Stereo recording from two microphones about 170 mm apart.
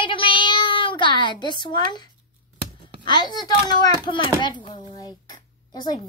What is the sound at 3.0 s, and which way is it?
A child's voice, 25° left (ahead or behind).